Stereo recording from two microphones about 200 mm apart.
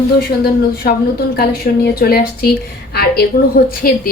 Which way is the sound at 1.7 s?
45° left (ahead or behind).